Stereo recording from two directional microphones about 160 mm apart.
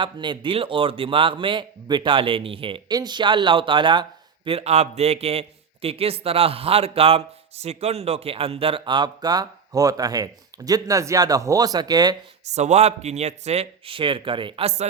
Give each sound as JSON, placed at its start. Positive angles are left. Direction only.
{"t": 0.0, "sound": "a man's voice", "side_deg": -30}
{"t": 12.5, "sound": "a man's voice", "side_deg": -45}